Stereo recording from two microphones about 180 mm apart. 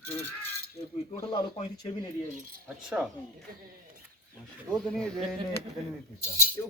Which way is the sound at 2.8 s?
5° right (ahead or behind).